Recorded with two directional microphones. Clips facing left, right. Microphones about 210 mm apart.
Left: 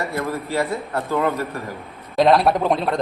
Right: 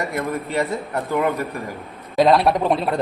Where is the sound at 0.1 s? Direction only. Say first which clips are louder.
Even; 20° right (ahead or behind).